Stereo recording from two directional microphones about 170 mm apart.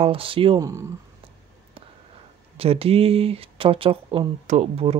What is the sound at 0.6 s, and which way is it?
Speech, 20° right (ahead or behind).